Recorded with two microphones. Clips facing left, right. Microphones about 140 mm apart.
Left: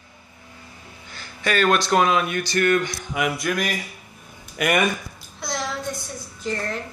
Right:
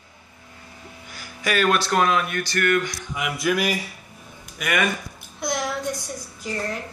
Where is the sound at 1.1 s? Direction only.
10° right (ahead or behind).